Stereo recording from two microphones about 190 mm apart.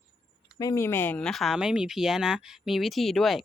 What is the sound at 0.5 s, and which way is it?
Speech, 15° left (ahead or behind).